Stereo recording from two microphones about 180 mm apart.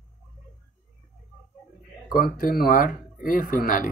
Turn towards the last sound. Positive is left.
turn(degrees=45)  # may be behind; listen again after turning